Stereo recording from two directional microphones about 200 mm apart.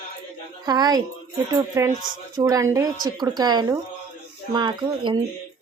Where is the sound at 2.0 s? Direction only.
20° right (ahead or behind).